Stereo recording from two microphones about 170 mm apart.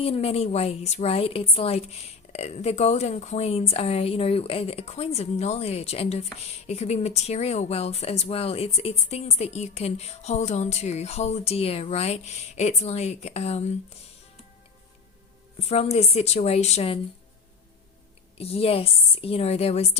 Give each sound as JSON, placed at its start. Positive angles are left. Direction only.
{"t": 0.0, "sound": "speech", "side_deg": 35}
{"t": 15.7, "sound": "speech", "side_deg": 40}
{"t": 18.3, "sound": "speech", "side_deg": 35}